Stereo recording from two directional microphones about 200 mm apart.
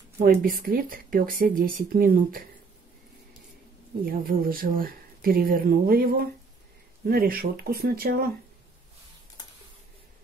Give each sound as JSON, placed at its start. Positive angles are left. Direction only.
{"t": 0.2, "sound": "speech", "side_deg": -45}
{"t": 4.3, "sound": "speech", "side_deg": -45}